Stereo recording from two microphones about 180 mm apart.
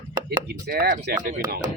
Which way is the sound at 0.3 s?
65° right (ahead or behind).